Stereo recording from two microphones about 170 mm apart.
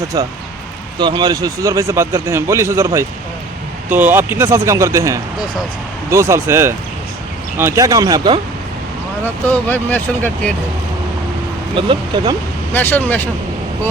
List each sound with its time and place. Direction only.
0.1 s speech: 20° right (ahead or behind)
9.5 s speech: 10° left (ahead or behind)
11.7 s speech: 30° right (ahead or behind)
12.7 s speech: 10° left (ahead or behind)